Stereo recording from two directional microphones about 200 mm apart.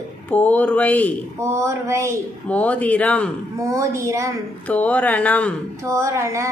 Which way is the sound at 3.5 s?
15° right (ahead or behind).